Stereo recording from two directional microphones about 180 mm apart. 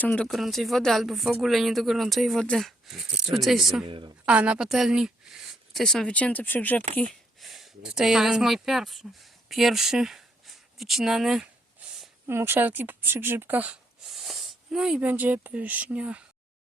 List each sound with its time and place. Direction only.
0.0 s speech: 5° left (ahead or behind)
3.8 s a woman's voice: 30° right (ahead or behind)
4.3 s speech: 5° right (ahead or behind)
12.2 s speech: 15° right (ahead or behind)